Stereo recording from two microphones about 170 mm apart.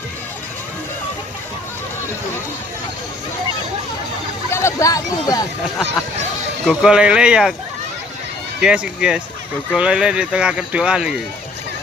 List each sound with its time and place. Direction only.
4.5 s speech: 15° left (ahead or behind)
6.7 s speech: 5° right (ahead or behind)
8.6 s speech: 5° right (ahead or behind)